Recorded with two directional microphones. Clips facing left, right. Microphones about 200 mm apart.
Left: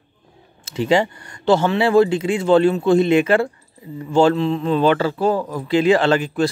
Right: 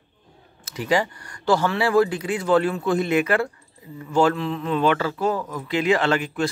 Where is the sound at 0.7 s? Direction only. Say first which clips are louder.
Left 5 dB; 25° left (ahead or behind).